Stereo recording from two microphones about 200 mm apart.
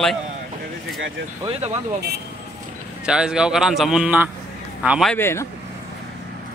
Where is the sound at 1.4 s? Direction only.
25° right (ahead or behind).